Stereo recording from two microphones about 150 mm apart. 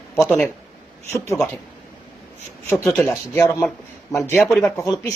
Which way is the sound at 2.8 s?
15° left (ahead or behind).